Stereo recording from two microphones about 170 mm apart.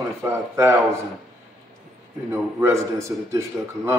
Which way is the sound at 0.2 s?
15° right (ahead or behind).